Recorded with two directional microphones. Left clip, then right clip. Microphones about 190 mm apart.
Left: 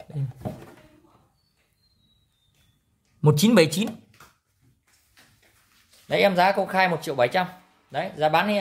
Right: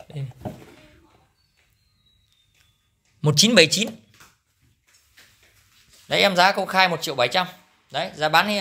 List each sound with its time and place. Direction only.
3.2 s speech: 20° left (ahead or behind)
6.0 s speech: 10° left (ahead or behind)